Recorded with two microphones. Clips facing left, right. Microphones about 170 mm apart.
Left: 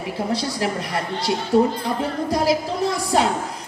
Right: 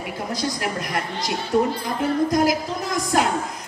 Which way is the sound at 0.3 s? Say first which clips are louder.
Left 2 dB; 30° left (ahead or behind).